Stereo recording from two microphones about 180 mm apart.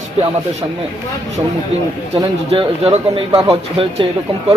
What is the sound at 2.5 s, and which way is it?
Speech, 35° right (ahead or behind).